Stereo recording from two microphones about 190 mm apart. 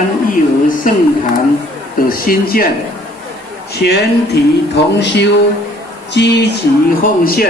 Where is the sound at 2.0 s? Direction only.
50° left (ahead or behind).